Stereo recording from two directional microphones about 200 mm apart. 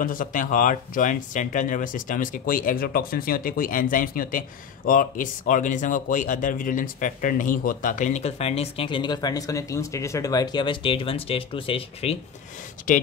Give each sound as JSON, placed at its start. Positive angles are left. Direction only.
{"t": 0.0, "sound": "speech", "side_deg": 45}
{"t": 12.9, "sound": "speech", "side_deg": 40}